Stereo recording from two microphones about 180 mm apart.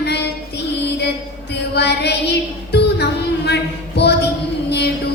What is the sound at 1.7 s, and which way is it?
Music, 70° left (ahead or behind).